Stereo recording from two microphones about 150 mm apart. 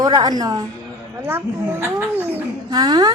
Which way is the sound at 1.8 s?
15° right (ahead or behind).